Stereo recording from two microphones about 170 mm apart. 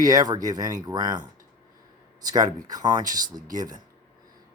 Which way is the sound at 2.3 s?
20° right (ahead or behind).